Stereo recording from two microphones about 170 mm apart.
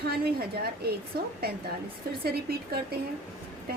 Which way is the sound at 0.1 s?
65° right (ahead or behind).